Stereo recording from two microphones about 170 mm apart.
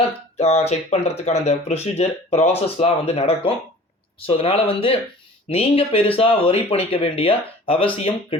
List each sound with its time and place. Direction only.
0.3 s speech: 40° left (ahead or behind)